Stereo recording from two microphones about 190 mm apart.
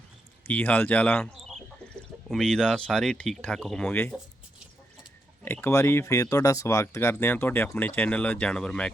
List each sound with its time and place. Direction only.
0.4 s speech: 10° left (ahead or behind)
5.4 s speech: 10° left (ahead or behind)